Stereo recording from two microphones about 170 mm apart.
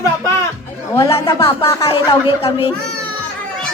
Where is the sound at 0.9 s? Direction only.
20° left (ahead or behind).